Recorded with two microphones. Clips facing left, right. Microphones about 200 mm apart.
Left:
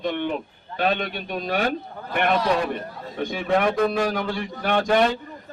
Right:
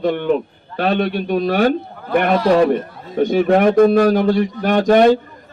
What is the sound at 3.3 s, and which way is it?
Speech, 45° right (ahead or behind).